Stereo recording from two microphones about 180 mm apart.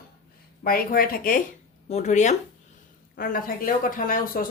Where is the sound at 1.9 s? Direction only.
40° left (ahead or behind).